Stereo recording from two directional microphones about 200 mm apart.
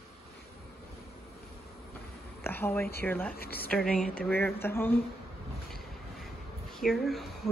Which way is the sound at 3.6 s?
5° left (ahead or behind).